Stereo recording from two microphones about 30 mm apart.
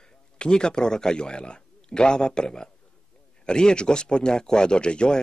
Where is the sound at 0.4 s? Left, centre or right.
Left.